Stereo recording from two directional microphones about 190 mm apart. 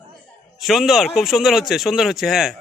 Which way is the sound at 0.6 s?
Centre (ahead or behind).